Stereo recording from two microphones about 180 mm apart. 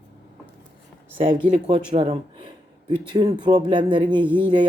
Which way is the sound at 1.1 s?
30° right (ahead or behind).